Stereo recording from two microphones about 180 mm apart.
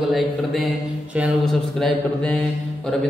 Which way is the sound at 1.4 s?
Centre (ahead or behind).